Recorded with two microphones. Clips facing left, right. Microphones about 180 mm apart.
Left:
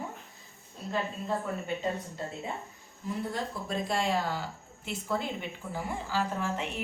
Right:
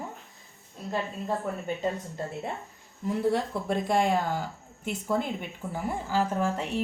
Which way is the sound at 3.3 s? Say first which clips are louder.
Right 6 dB; 60° right (ahead or behind).